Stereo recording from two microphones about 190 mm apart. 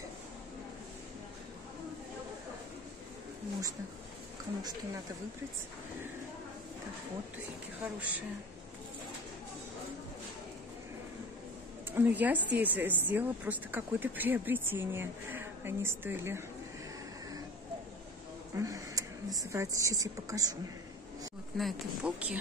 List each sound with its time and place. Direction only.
7.8 s speech: 10° right (ahead or behind)
11.9 s speech: 10° right (ahead or behind)
18.6 s speech: 15° right (ahead or behind)
21.5 s speech: 5° right (ahead or behind)